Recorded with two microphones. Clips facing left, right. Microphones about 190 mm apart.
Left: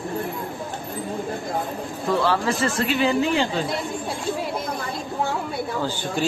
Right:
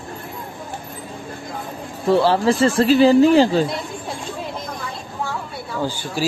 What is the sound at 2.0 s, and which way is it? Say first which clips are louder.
Speech: right 6 dB; 30° right (ahead or behind).